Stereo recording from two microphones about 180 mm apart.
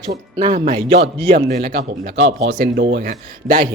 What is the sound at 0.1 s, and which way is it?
Speech, 40° right (ahead or behind).